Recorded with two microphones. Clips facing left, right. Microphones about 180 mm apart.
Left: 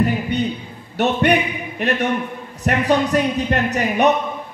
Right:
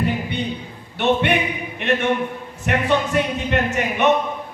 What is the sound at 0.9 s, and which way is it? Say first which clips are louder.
Speech: left 2 dB; 40° left (ahead or behind).